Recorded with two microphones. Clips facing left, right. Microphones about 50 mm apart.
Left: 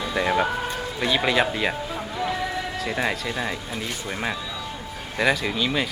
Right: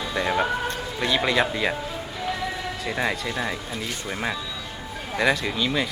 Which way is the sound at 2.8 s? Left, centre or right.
Centre.